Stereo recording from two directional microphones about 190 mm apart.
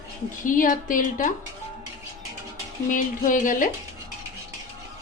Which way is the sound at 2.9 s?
45° left (ahead or behind).